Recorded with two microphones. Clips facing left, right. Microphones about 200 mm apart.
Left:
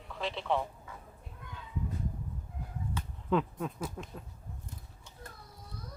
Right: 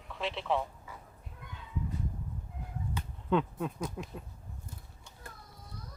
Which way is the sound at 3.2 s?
Centre (ahead or behind).